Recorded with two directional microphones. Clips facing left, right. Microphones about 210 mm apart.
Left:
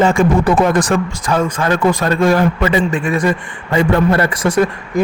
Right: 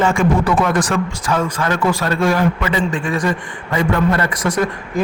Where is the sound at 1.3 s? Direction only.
30° left (ahead or behind).